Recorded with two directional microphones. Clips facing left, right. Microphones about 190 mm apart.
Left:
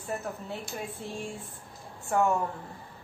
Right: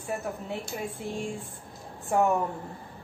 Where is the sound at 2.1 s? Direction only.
15° right (ahead or behind).